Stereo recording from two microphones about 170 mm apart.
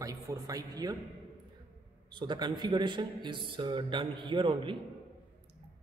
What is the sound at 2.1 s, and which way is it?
A man's voice, 25° right (ahead or behind).